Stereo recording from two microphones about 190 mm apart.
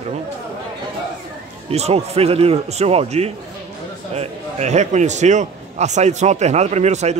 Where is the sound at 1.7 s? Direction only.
35° right (ahead or behind).